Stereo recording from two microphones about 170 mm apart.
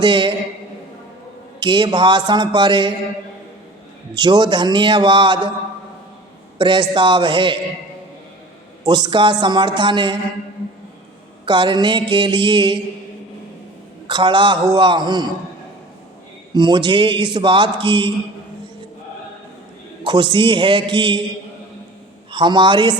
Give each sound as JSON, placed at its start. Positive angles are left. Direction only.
{"t": 0.0, "sound": "speech", "side_deg": -30}
{"t": 1.5, "sound": "speech", "side_deg": -30}
{"t": 4.1, "sound": "speech", "side_deg": -25}
{"t": 6.6, "sound": "speech", "side_deg": -30}
{"t": 8.8, "sound": "speech", "side_deg": -25}
{"t": 11.4, "sound": "speech", "side_deg": -30}
{"t": 14.1, "sound": "speech", "side_deg": -25}
{"t": 16.6, "sound": "speech", "side_deg": -25}
{"t": 20.1, "sound": "speech", "side_deg": -30}
{"t": 22.3, "sound": "a man's voice", "side_deg": -25}